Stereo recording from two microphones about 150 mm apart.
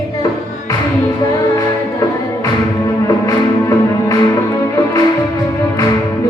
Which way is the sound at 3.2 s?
20° left (ahead or behind).